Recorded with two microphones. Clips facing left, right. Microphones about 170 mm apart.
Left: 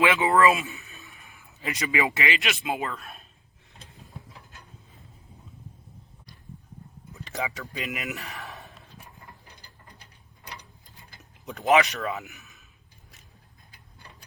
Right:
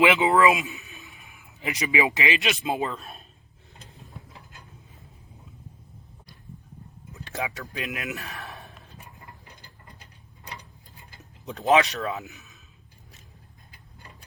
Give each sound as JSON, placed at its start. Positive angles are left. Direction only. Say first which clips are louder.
{"t": 0.0, "sound": "a man's voice", "louder": "right 1 dB", "side_deg": -20}
{"t": 7.1, "sound": "speech", "louder": "even", "side_deg": 0}
{"t": 11.4, "sound": "speech", "louder": "right 1 dB", "side_deg": -20}
{"t": 12.3, "sound": "a sound", "louder": "right 2 dB", "side_deg": -20}